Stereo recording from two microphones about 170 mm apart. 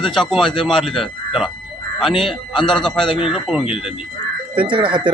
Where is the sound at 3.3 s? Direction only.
Centre (ahead or behind).